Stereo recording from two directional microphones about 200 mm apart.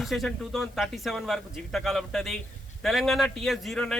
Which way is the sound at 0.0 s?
Centre (ahead or behind).